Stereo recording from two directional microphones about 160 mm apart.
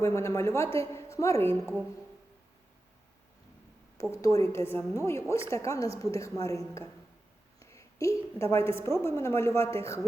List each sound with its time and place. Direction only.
0.0 s a woman's voice: 15° left (ahead or behind)
4.1 s a woman's voice: 20° left (ahead or behind)